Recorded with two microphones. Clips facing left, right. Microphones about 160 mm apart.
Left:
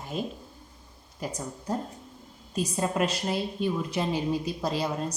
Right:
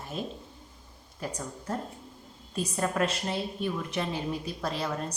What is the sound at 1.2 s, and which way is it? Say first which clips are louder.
Speech: left 2 dB; 10° left (ahead or behind).